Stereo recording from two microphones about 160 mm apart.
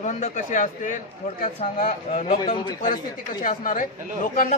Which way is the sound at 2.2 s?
35° left (ahead or behind).